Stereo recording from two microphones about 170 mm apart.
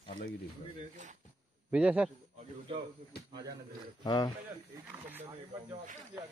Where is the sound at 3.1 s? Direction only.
70° left (ahead or behind).